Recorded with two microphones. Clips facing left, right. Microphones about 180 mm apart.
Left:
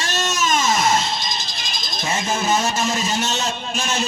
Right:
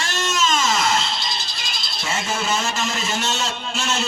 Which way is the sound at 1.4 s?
40° left (ahead or behind).